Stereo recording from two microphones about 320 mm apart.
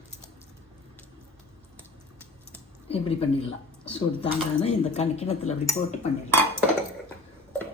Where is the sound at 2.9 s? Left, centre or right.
Centre.